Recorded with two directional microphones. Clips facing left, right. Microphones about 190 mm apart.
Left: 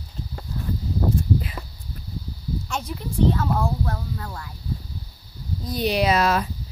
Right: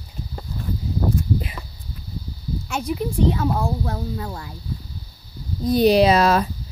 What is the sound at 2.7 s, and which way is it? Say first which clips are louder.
Speech: right 6 dB; 10° right (ahead or behind).